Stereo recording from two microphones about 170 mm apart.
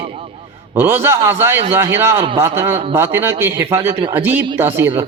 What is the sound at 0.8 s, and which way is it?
A man's voice, 15° right (ahead or behind).